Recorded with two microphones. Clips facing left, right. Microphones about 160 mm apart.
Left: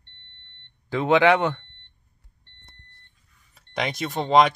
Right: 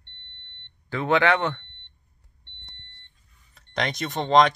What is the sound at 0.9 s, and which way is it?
Speech, 15° left (ahead or behind).